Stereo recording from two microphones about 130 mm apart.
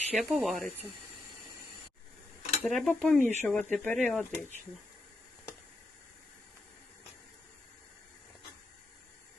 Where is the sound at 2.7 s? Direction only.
5° left (ahead or behind).